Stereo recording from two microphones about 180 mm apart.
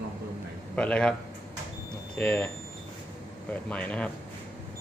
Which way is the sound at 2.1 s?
10° left (ahead or behind).